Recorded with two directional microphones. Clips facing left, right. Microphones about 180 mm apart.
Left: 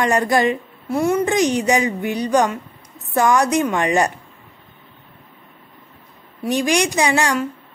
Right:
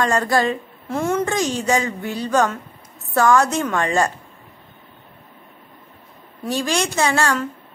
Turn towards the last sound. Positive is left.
turn(degrees=15)  # may be behind; listen again after turning